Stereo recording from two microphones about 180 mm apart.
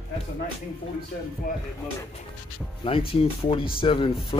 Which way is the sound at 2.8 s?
30° left (ahead or behind).